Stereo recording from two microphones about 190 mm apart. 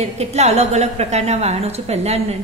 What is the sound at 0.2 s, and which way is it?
A woman's voice, 35° right (ahead or behind).